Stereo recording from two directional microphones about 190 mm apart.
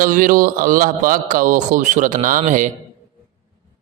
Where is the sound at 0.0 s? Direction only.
45° right (ahead or behind).